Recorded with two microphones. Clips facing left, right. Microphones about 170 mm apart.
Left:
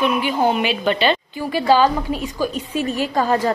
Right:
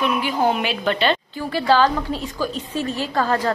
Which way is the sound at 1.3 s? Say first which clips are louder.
Left 2 dB; 15° left (ahead or behind).